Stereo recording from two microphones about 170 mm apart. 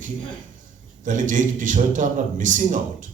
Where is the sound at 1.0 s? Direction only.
50° right (ahead or behind).